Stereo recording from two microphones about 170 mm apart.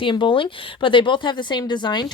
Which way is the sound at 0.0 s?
30° left (ahead or behind).